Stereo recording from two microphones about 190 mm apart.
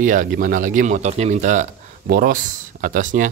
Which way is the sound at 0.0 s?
45° right (ahead or behind).